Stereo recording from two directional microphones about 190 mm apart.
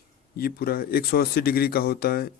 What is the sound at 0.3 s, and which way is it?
Speech, 50° left (ahead or behind).